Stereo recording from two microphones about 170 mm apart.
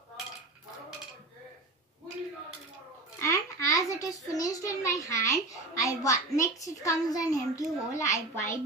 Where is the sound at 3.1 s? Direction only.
15° left (ahead or behind).